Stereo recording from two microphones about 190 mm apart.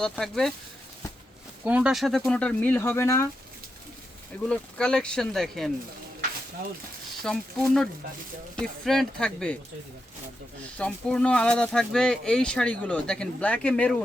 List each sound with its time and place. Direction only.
0.0 s speech: centre (ahead or behind)
1.6 s speech: 5° right (ahead or behind); by 3.2 s 15° left (ahead or behind)
4.4 s speech: 5° left (ahead or behind)
7.3 s speech: centre (ahead or behind)
10.8 s speech: 5° left (ahead or behind)